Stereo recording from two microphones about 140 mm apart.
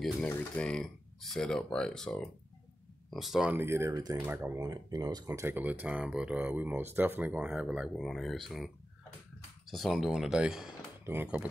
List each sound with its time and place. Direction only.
0.0 s speech: 10° left (ahead or behind)
3.5 s speech: 20° right (ahead or behind)
4.6 s speech: 30° right (ahead or behind); by 11.4 s 10° right (ahead or behind)